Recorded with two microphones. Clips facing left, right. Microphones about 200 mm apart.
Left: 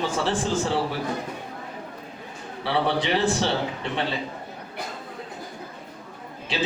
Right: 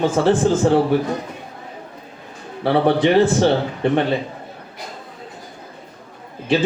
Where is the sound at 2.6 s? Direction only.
50° right (ahead or behind).